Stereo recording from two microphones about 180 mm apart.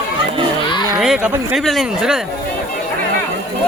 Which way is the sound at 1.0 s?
5° right (ahead or behind).